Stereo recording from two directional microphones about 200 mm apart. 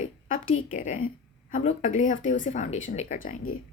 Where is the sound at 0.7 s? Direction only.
40° left (ahead or behind).